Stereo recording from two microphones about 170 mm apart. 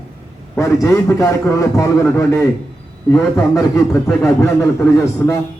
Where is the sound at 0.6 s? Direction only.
15° left (ahead or behind).